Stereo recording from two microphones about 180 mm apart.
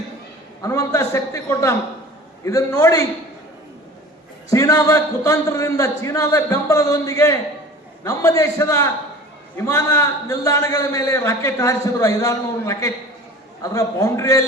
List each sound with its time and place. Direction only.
0.6 s a man's voice: 20° left (ahead or behind)
4.4 s a man's voice: 20° left (ahead or behind)